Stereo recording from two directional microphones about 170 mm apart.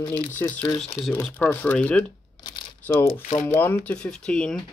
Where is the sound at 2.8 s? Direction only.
10° left (ahead or behind).